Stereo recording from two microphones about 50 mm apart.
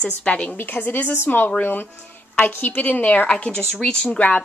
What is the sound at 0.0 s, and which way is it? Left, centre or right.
Speech, left.